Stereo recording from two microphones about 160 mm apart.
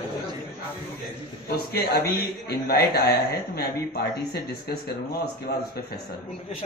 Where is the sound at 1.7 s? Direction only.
80° left.